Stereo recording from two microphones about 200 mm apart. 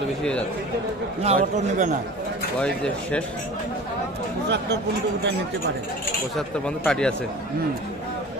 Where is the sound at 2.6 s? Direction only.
5° left (ahead or behind).